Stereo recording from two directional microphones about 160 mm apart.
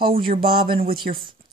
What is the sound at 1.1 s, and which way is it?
Speech, 60° right (ahead or behind).